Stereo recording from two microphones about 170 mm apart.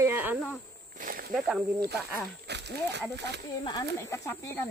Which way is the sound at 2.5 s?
85° right.